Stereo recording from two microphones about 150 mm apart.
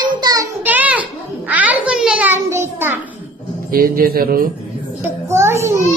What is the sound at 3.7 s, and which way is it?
Speech, 80° right.